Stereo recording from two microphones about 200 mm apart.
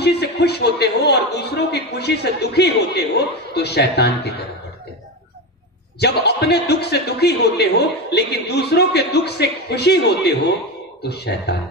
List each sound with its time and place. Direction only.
0.0 s a man's voice: 55° left (ahead or behind)
5.9 s a man's voice: 55° left (ahead or behind)